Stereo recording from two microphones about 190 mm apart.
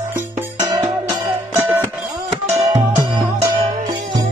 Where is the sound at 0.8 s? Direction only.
15° right (ahead or behind).